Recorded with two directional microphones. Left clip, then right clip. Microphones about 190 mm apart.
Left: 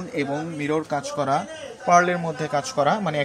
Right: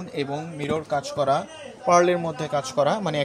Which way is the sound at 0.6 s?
25° right (ahead or behind).